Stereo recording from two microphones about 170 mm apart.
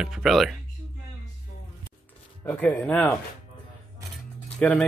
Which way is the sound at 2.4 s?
10° left (ahead or behind).